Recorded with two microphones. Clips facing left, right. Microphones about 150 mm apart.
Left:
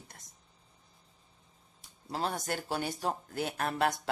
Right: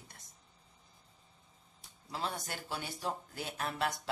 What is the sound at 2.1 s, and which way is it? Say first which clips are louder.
Speech: left 5 dB; 45° left (ahead or behind).